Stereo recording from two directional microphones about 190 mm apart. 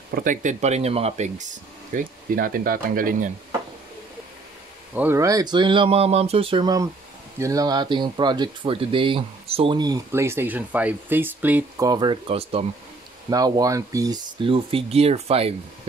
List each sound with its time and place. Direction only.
0.1 s speech: 45° right (ahead or behind)
2.0 s speech: 50° right (ahead or behind)
4.9 s speech: 10° right (ahead or behind)
11.9 s speech: 25° right (ahead or behind)
13.3 s speech: 20° right (ahead or behind)